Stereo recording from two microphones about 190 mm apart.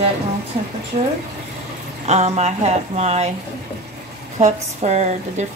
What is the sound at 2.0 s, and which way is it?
Speech, 35° right (ahead or behind).